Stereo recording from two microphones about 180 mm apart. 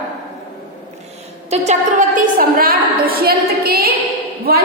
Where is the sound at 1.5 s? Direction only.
40° right (ahead or behind).